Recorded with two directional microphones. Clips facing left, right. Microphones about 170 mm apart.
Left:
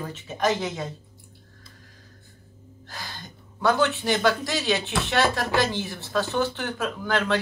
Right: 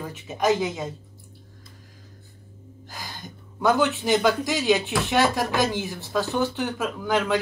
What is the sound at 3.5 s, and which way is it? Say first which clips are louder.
Speech: right 1 dB; 15° right (ahead or behind).